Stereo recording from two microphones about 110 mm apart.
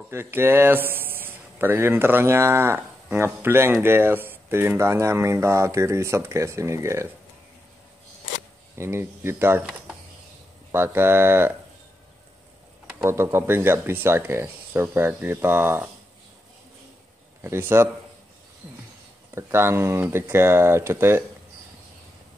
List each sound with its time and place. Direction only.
0.1 s a man's voice: 20° right (ahead or behind)
8.7 s a man's voice: 25° right (ahead or behind)
9.7 s a sound: 5° right (ahead or behind)
10.7 s a man's voice: 20° right (ahead or behind)
13.0 s a man's voice: 25° right (ahead or behind)
17.4 s a man's voice: 20° right (ahead or behind)
19.3 s a man's voice: 25° right (ahead or behind)